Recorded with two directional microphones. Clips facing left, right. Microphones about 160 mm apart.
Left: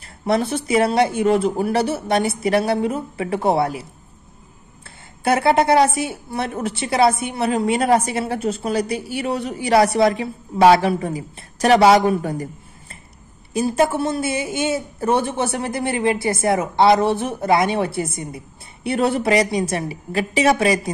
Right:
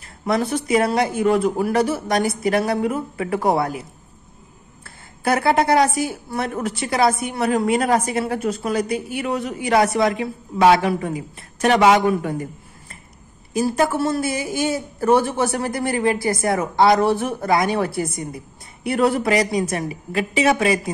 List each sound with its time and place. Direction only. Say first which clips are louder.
0.0 s a woman's voice: left 1 dB; 30° left (ahead or behind)
4.8 s a woman's voice: left 2 dB; 25° left (ahead or behind)